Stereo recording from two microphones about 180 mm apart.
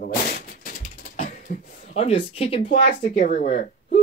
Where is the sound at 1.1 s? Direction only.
50° left (ahead or behind).